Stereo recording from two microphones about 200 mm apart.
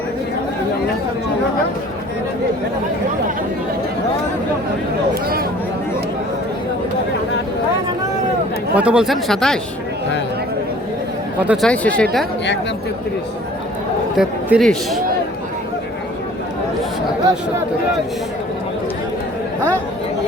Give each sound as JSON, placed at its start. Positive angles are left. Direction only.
{"t": 8.7, "sound": "speech", "side_deg": -5}
{"t": 11.3, "sound": "speech", "side_deg": -5}
{"t": 14.2, "sound": "speech", "side_deg": 0}